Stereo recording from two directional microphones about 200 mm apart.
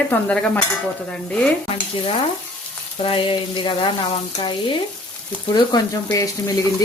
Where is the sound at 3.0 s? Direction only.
25° left (ahead or behind).